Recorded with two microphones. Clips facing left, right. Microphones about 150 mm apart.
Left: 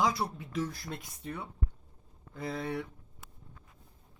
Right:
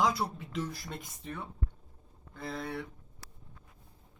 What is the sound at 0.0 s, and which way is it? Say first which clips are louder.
Speech: even; 5° left (ahead or behind).